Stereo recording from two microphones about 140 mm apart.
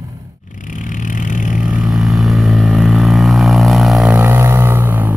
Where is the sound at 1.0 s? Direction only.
65° left (ahead or behind).